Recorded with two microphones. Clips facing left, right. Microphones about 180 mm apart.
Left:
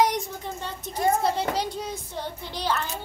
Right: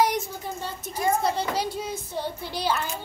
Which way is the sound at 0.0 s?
5° right (ahead or behind).